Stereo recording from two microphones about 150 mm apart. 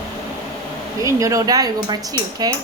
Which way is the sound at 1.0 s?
20° right (ahead or behind).